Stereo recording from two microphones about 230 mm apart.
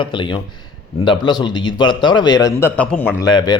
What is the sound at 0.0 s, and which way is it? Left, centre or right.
A man's voice, left.